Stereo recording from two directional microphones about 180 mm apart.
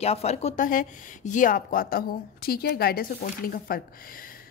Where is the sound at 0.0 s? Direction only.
35° left (ahead or behind).